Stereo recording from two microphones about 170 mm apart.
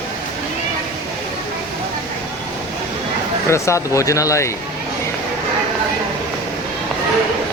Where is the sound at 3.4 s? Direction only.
15° left (ahead or behind).